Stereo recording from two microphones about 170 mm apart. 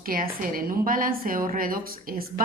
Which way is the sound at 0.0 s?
55° right (ahead or behind).